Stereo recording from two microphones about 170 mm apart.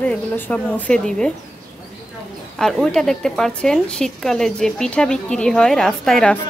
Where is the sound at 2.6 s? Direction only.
Centre (ahead or behind).